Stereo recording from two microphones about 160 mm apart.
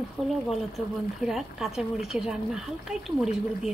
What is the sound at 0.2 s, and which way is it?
Speech, 5° left (ahead or behind).